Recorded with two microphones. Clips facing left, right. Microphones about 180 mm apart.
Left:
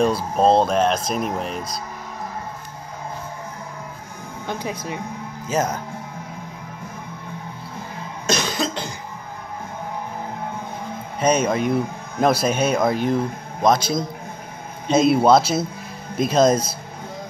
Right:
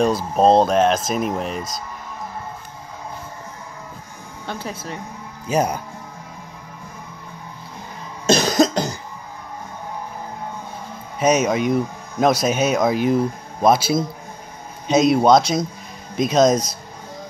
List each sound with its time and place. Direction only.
0.0 s speech: centre (ahead or behind)
4.5 s speech: 15° left (ahead or behind)
5.5 s speech: 15° right (ahead or behind)
8.3 s cough: 40° right (ahead or behind)
11.1 s speech: 5° right (ahead or behind)